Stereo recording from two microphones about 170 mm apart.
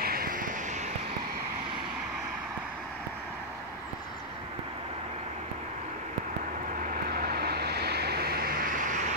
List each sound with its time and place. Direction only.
0.0 s vehicle: 60° right (ahead or behind)
6.9 s vehicle: 65° right (ahead or behind)